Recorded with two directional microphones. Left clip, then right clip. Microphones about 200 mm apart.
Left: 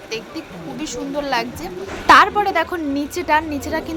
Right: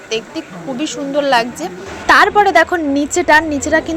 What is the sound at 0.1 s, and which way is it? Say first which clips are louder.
Speech: right 7 dB; 20° right (ahead or behind).